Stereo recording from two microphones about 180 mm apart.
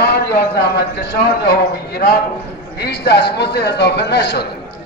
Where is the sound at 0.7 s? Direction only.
65° left (ahead or behind).